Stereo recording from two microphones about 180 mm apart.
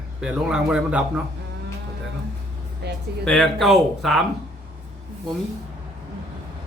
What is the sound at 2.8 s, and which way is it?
Speech, 65° right (ahead or behind).